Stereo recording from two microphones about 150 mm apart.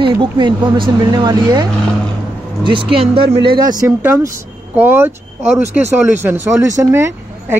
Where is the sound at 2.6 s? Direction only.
35° right (ahead or behind); by 5.1 s 15° right (ahead or behind).